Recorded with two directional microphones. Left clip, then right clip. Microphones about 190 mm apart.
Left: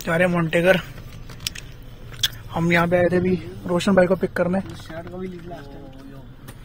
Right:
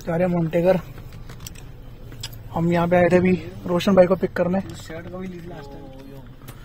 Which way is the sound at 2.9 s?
30° right (ahead or behind).